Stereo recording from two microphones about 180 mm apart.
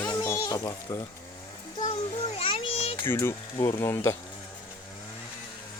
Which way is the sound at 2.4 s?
30° left (ahead or behind).